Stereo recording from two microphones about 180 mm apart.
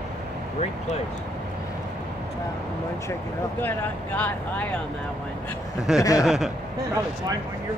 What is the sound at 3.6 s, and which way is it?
Speech, 10° left (ahead or behind).